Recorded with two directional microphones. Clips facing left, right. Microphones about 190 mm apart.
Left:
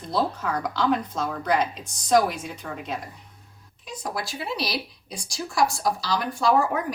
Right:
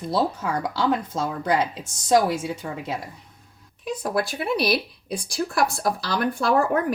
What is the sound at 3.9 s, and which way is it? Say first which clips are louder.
Speech: right 7 dB; 55° right (ahead or behind).